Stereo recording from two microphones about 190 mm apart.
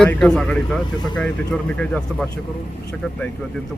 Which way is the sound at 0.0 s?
5° left (ahead or behind).